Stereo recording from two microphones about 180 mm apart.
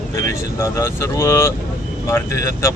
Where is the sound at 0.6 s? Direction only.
15° left (ahead or behind).